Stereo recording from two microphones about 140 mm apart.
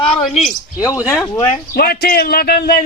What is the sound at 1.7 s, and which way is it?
A man's voice, 90° left.